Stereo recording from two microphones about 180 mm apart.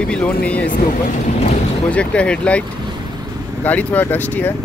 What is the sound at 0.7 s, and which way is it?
Speech, 45° left (ahead or behind).